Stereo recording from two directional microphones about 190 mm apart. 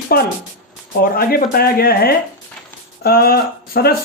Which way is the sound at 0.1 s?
50° left (ahead or behind).